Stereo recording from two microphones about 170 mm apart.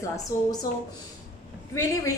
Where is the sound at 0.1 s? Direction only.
20° left (ahead or behind).